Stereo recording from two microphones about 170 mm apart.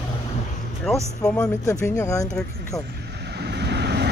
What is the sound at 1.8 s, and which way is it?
Speech, 15° left (ahead or behind).